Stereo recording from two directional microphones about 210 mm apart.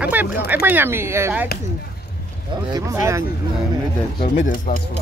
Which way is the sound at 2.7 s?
15° right (ahead or behind).